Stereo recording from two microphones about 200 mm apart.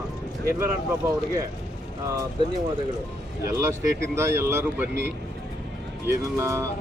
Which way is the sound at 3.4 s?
15° right (ahead or behind).